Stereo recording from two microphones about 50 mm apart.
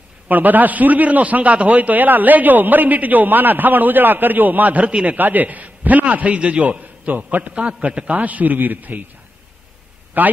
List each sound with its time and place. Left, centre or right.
0.3 s a man's voice: right
7.5 s a man's voice: right
10.2 s a man's voice: right